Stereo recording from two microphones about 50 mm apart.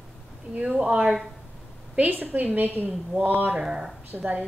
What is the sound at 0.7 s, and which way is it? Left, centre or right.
Speech, centre.